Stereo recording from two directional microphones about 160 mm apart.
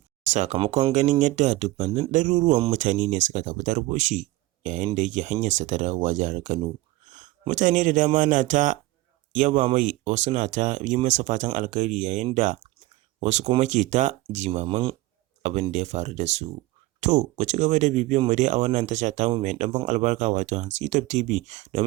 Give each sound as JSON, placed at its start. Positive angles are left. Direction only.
{"t": 0.3, "sound": "speech", "side_deg": -45}
{"t": 0.6, "sound": "speech", "side_deg": -35}
{"t": 2.1, "sound": "speech", "side_deg": -50}
{"t": 7.0, "sound": "a sound", "side_deg": -50}
{"t": 7.5, "sound": "speech", "side_deg": -50}
{"t": 14.7, "sound": "speech", "side_deg": -35}
{"t": 15.4, "sound": "speech", "side_deg": -45}